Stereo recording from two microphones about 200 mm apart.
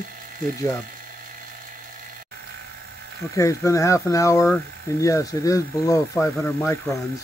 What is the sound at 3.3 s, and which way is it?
Speech, 15° left (ahead or behind).